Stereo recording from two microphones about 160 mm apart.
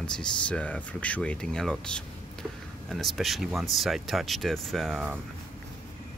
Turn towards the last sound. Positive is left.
turn(degrees=0)  # may be behind; listen again after turning